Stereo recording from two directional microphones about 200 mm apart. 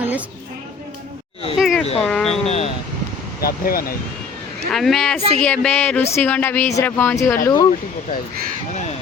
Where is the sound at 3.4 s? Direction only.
45° left (ahead or behind).